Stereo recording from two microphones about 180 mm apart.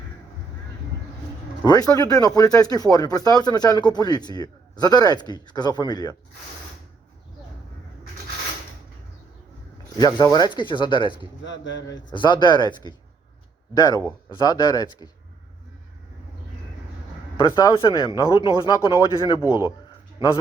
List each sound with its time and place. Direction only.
1.6 s speech: 20° left (ahead or behind)
10.0 s speech: 25° left (ahead or behind)
11.4 s speech: 90° left
12.1 s speech: 25° left (ahead or behind)
17.4 s speech: 20° left (ahead or behind)
19.3 s speech: 20° left (ahead or behind)